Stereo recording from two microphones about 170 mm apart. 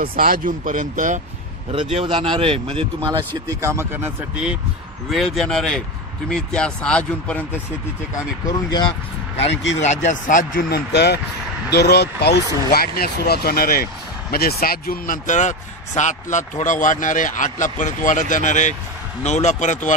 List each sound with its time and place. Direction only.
0.0 s speech: 60° right (ahead or behind)
1.7 s speech: 35° right (ahead or behind)
3.3 s speech: 15° right (ahead or behind); by 7.6 s 10° left (ahead or behind)
8.5 s speech: 25° left (ahead or behind)
9.8 s speech: 45° left (ahead or behind)
10.9 s speech: 80° left
11.7 s speech: 70° left (ahead or behind)
12.7 s speech: 60° left (ahead or behind); by 19.9 s 45° left (ahead or behind)